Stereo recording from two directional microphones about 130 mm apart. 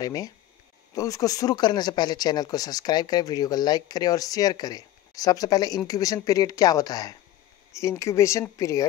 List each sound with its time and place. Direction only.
0.0 s speech: 25° left (ahead or behind)